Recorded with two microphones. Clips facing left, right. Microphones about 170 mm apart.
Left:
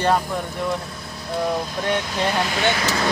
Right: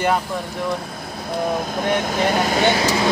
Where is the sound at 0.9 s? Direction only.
55° right (ahead or behind).